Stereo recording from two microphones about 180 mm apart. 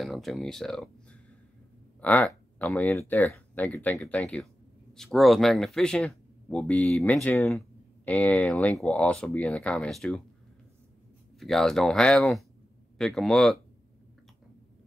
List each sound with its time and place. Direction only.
0.0 s speech: centre (ahead or behind)
2.0 s speech: 10° left (ahead or behind)
11.3 s speech: centre (ahead or behind)